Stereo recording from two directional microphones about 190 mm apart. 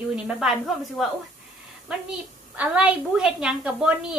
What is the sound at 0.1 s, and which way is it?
A woman's voice, 5° right (ahead or behind).